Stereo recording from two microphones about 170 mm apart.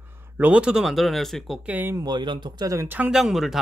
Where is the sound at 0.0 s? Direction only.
15° right (ahead or behind).